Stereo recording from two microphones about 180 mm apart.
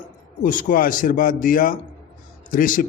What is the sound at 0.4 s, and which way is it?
Speech, 50° left (ahead or behind).